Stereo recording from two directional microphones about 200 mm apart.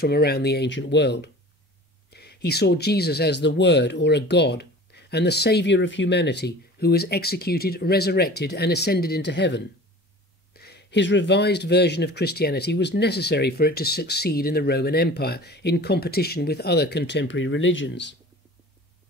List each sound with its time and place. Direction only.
0.0 s speech: 50° left (ahead or behind)